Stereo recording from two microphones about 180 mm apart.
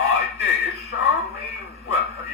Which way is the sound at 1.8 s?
15° right (ahead or behind).